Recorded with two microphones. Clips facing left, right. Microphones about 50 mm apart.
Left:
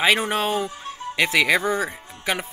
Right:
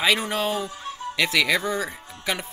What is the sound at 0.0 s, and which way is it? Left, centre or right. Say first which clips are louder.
Speech: left 3 dB; left.